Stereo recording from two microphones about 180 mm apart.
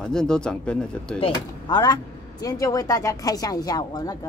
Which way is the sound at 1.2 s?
25° left (ahead or behind).